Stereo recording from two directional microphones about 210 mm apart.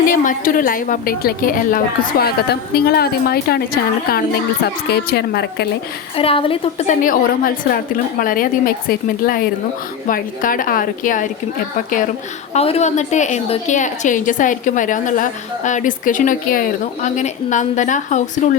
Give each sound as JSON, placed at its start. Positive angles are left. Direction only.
{"t": 0.1, "sound": "a woman's voice", "side_deg": 40}
{"t": 4.6, "sound": "a woman's voice", "side_deg": 50}
{"t": 6.1, "sound": "a woman's voice", "side_deg": 25}
{"t": 12.5, "sound": "a woman's voice", "side_deg": 30}